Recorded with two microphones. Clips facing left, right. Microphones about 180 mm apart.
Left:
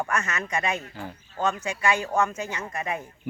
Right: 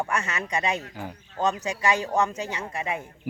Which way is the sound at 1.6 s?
40° right (ahead or behind).